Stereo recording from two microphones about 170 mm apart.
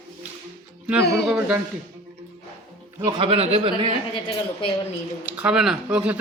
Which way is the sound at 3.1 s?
35° right (ahead or behind).